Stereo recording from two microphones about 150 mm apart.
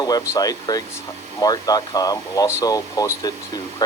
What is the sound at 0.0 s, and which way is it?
Speech, 25° left (ahead or behind).